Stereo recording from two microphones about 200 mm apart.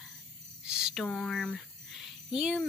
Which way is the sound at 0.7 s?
5° right (ahead or behind).